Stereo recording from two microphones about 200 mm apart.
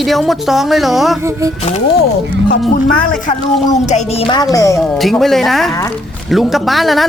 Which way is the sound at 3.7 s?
35° left (ahead or behind).